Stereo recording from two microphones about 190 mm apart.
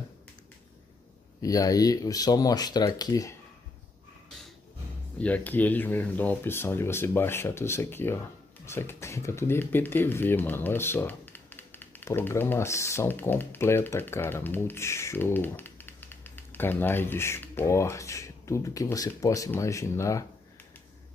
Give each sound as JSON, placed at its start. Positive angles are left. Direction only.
{"t": 1.4, "sound": "speech", "side_deg": 20}
{"t": 5.2, "sound": "speech", "side_deg": 10}